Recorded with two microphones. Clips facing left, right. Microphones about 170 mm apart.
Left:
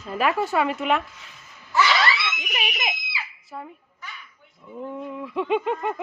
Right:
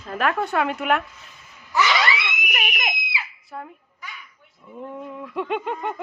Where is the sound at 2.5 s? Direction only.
5° left (ahead or behind).